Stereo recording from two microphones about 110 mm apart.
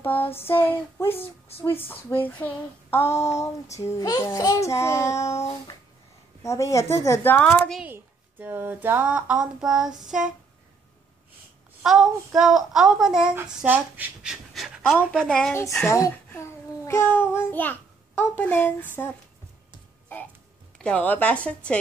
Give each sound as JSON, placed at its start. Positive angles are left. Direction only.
{"t": 0.0, "sound": "a child's voice", "side_deg": 20}
{"t": 7.8, "sound": "speech", "side_deg": -20}
{"t": 11.8, "sound": "a child's voice", "side_deg": -5}
{"t": 13.7, "sound": "speech", "side_deg": -15}
{"t": 14.2, "sound": "pant", "side_deg": -5}
{"t": 15.1, "sound": "a child's voice", "side_deg": 5}
{"t": 15.5, "sound": "a child's voice", "side_deg": 25}
{"t": 20.7, "sound": "a woman's voice", "side_deg": 10}